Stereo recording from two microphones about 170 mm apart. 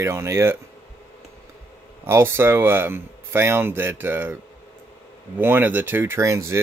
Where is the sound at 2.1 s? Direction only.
15° right (ahead or behind).